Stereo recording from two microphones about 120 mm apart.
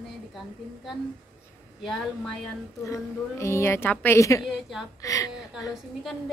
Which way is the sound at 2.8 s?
25° left (ahead or behind).